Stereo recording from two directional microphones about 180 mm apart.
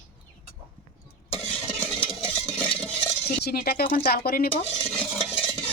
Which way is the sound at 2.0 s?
5° left (ahead or behind).